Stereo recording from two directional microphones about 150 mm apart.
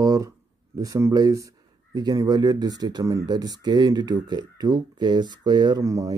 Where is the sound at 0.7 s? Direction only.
20° right (ahead or behind).